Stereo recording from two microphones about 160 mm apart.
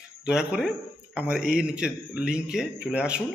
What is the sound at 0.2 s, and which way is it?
A man's voice, 5° right (ahead or behind).